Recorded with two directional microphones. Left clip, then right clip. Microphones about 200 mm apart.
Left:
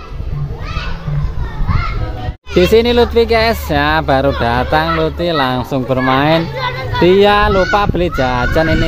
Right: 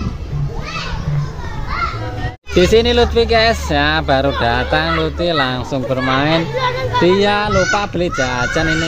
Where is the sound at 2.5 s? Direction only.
25° left (ahead or behind).